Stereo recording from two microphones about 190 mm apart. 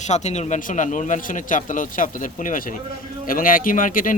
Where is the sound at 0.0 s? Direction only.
35° left (ahead or behind).